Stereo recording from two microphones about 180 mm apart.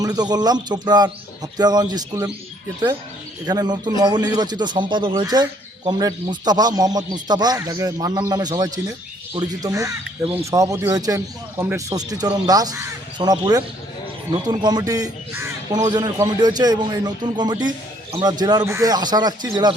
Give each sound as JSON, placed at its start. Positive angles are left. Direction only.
{"t": 0.0, "sound": "speech", "side_deg": -20}
{"t": 3.4, "sound": "speech", "side_deg": -25}